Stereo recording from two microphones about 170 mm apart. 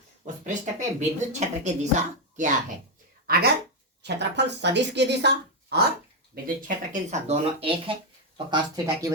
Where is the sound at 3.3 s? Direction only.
65° right (ahead or behind).